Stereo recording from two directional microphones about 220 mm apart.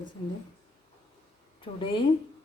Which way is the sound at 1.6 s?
25° left (ahead or behind).